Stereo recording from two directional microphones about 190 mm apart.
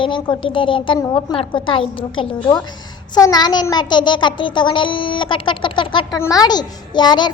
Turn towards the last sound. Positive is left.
turn(degrees=25)  # may be behind; listen again after turning